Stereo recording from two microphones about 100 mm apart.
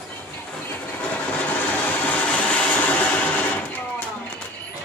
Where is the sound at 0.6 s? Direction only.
15° left (ahead or behind).